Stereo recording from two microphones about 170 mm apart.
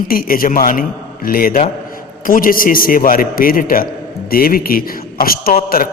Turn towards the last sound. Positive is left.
turn(degrees=60)  # may be behind; listen again after turning